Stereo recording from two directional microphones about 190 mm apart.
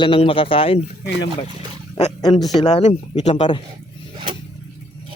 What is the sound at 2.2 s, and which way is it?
Speech, 20° left (ahead or behind).